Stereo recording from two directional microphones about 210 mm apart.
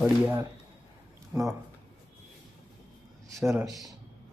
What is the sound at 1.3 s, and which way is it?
Speech, centre (ahead or behind).